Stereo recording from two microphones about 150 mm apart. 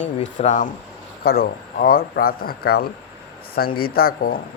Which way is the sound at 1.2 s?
90° left.